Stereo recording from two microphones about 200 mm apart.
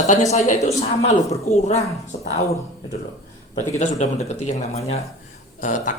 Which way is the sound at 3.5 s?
35° left (ahead or behind).